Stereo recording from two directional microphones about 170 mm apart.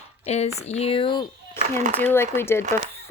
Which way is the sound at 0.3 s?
40° left (ahead or behind).